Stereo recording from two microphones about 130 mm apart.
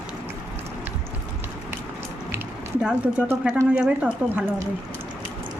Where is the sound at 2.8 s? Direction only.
10° right (ahead or behind).